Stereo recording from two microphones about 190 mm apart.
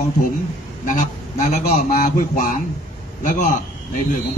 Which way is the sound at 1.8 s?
45° left (ahead or behind).